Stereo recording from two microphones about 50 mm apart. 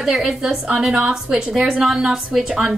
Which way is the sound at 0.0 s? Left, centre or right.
Centre.